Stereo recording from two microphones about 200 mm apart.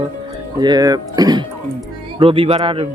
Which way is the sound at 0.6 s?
20° right (ahead or behind).